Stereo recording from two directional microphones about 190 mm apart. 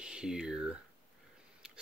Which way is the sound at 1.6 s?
5° right (ahead or behind).